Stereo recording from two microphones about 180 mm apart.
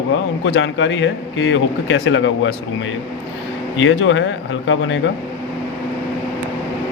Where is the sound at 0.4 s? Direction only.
90° left.